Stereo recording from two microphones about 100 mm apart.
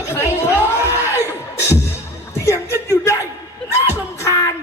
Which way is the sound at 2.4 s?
30° left (ahead or behind).